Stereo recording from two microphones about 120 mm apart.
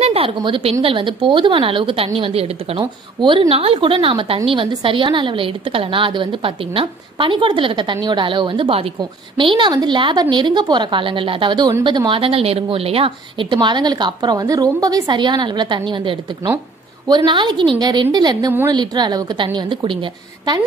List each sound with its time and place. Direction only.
0.0 s a woman's voice: 50° right (ahead or behind)
2.8 s a woman's voice: 40° right (ahead or behind)
9.6 s a woman's voice: 40° right (ahead or behind)